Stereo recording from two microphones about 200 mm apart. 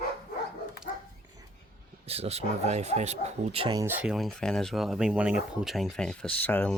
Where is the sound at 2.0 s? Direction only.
30° right (ahead or behind).